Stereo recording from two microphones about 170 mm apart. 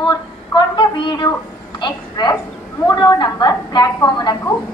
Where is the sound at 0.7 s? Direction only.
25° left (ahead or behind).